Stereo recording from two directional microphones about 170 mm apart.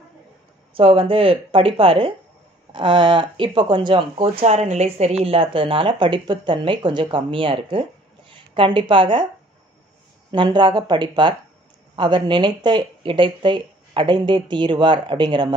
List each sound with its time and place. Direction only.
0.7 s speech: 30° right (ahead or behind)
10.3 s speech: 30° right (ahead or behind)